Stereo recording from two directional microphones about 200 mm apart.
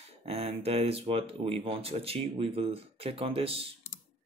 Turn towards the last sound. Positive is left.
turn(degrees=-30)  # may be behind; listen again after turning